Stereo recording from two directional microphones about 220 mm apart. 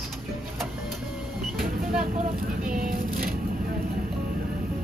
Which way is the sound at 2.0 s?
40° right (ahead or behind).